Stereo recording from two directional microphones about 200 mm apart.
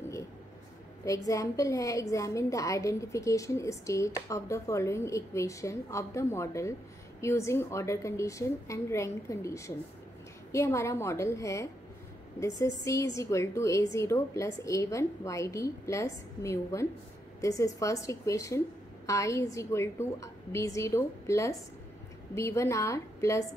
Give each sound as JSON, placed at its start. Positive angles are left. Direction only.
{"t": 1.0, "sound": "a woman's voice", "side_deg": 15}